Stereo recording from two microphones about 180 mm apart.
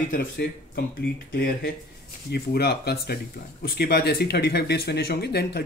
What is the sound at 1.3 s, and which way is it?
Speech, 55° left (ahead or behind).